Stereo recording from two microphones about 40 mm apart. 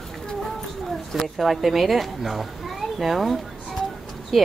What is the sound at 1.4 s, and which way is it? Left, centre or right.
A child's voice, centre.